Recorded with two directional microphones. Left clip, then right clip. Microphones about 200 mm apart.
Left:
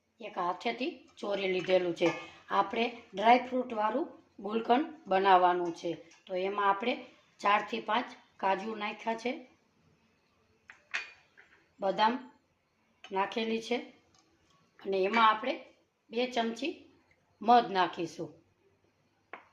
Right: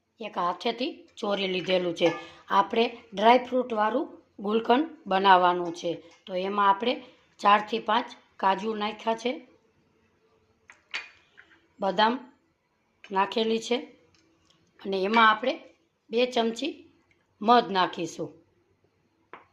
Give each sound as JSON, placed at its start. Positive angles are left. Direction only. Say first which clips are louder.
{"t": 0.2, "sound": "a woman's voice", "louder": "right 5 dB", "side_deg": -45}
{"t": 11.8, "sound": "a woman's voice", "louder": "right 4 dB", "side_deg": -35}